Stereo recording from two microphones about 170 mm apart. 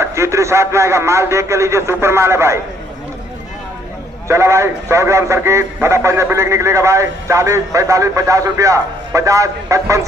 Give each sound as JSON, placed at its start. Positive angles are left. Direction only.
{"t": 0.0, "sound": "a man's voice", "side_deg": -15}
{"t": 4.3, "sound": "a man's voice", "side_deg": -15}